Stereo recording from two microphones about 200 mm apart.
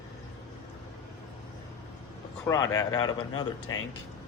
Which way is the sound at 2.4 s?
15° left (ahead or behind).